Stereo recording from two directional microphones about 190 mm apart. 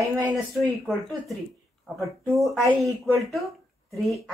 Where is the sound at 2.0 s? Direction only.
15° right (ahead or behind).